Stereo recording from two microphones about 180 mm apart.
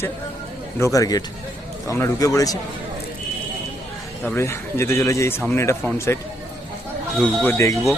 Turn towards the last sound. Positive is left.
turn(degrees=15)  # may be behind; listen again after turning